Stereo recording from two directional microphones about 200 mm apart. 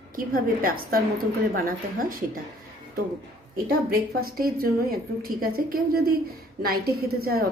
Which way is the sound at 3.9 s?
50° right (ahead or behind).